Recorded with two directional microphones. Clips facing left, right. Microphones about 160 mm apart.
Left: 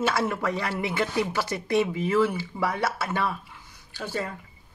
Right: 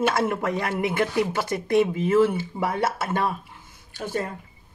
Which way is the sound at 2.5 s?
30° right (ahead or behind).